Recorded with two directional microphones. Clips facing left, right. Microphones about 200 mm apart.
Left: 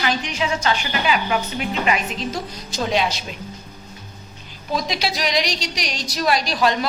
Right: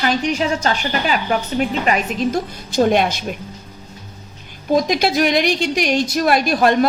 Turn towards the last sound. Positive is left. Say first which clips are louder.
# right 6 dB
turn(degrees=-50)  # may be behind; listen again after turning